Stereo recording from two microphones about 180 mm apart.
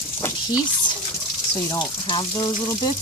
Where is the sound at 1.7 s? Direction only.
25° left (ahead or behind).